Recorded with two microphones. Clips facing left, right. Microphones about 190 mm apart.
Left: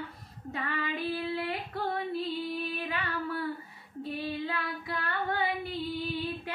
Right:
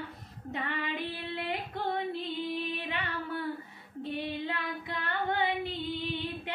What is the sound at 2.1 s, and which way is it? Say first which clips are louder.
Female singing: left 1 dB; 20° right (ahead or behind).